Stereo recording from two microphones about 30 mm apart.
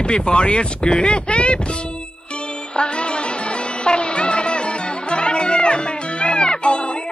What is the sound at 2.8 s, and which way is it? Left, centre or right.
Music, left.